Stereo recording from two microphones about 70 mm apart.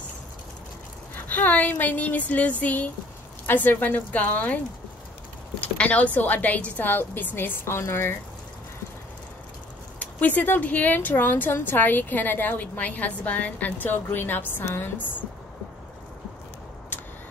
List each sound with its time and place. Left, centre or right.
1.1 s a woman's voice: left
5.6 s a woman's voice: left
9.9 s a woman's voice: left